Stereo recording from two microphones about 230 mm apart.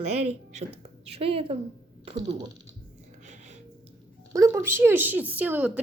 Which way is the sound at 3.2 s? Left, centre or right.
Right.